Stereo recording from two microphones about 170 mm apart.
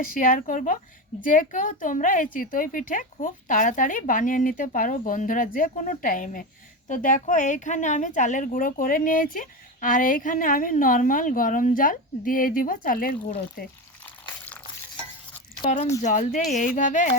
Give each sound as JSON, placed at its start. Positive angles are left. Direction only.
{"t": 0.0, "sound": "a woman's voice", "side_deg": 55}
{"t": 16.0, "sound": "a woman's voice", "side_deg": 45}